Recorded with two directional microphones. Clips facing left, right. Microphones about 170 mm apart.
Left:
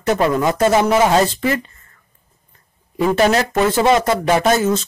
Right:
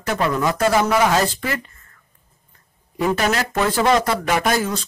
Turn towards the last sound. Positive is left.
turn(degrees=25)  # may be behind; listen again after turning